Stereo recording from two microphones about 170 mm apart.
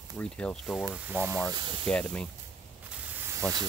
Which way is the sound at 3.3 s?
20° right (ahead or behind).